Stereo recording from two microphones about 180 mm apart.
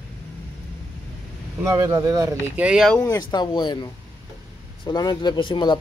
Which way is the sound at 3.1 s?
20° left (ahead or behind).